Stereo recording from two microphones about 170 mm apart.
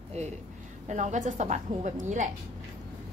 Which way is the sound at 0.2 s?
45° right (ahead or behind).